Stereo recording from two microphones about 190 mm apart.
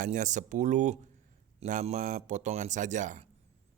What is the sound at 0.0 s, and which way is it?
Speech, 40° right (ahead or behind).